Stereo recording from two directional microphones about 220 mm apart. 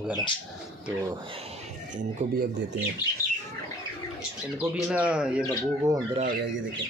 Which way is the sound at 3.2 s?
15° left (ahead or behind).